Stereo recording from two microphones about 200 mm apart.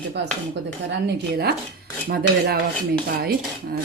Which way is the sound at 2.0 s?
50° right (ahead or behind).